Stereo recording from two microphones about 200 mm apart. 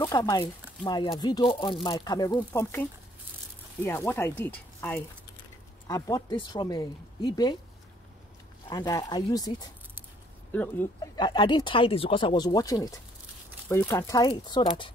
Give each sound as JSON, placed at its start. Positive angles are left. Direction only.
{"t": 0.0, "sound": "speech", "side_deg": 20}
{"t": 8.6, "sound": "speech", "side_deg": 20}
{"t": 10.5, "sound": "speech", "side_deg": 10}
{"t": 11.1, "sound": "speech", "side_deg": 20}